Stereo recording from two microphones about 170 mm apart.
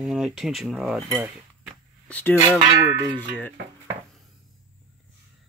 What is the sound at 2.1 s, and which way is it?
Speech, 10° left (ahead or behind).